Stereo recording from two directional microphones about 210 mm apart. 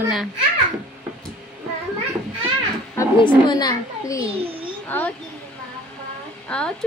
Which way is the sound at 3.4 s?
20° left (ahead or behind).